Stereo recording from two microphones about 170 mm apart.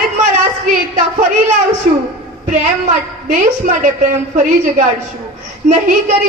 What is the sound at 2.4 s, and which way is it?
A woman's voice, 50° right (ahead or behind).